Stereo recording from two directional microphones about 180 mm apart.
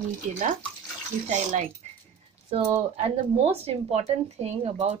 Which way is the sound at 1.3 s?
40° right (ahead or behind).